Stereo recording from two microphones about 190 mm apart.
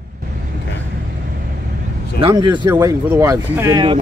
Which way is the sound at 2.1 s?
25° right (ahead or behind).